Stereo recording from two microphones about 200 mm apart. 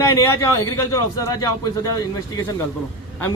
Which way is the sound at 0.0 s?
15° left (ahead or behind).